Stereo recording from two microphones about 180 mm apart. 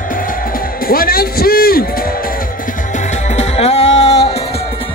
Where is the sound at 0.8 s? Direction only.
55° left (ahead or behind).